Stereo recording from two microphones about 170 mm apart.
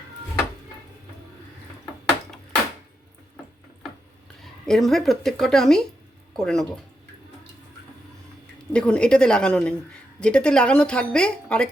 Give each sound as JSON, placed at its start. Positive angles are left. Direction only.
{"t": 4.6, "sound": "a woman's voice", "side_deg": 0}
{"t": 8.7, "sound": "a woman's voice", "side_deg": 5}